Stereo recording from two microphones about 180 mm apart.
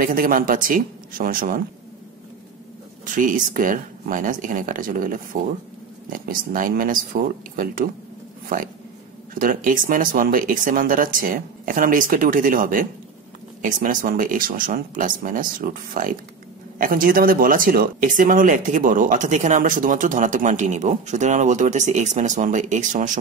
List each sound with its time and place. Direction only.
0.0 s speech: 50° right (ahead or behind)
3.1 s speech: 50° right (ahead or behind)